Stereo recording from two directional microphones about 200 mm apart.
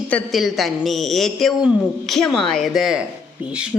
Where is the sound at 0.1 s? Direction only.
Centre (ahead or behind).